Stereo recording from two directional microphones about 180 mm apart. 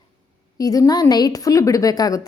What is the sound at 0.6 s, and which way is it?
A woman's voice, 20° left (ahead or behind).